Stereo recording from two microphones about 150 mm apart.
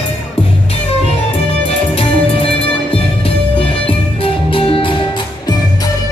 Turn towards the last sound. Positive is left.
turn(degrees=35)  # may be behind; listen again after turning